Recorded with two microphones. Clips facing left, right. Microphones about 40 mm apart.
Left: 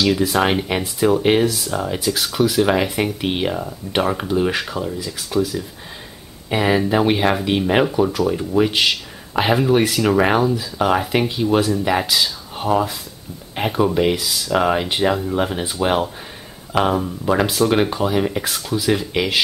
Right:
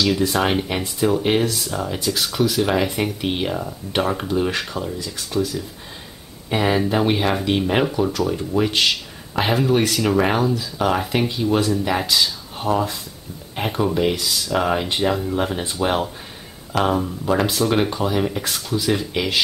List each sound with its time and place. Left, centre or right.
0.0 s speech: centre